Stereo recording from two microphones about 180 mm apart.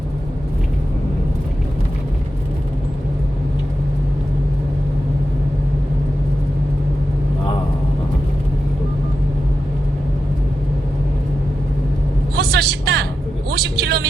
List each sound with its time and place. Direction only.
12.4 s vehicle: 60° right (ahead or behind)